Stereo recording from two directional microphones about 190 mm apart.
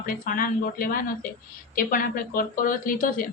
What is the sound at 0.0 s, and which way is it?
A woman's voice, 45° left (ahead or behind).